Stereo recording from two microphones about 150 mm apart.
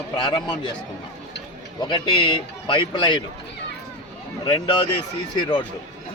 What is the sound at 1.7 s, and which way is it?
A man's voice, 30° left (ahead or behind).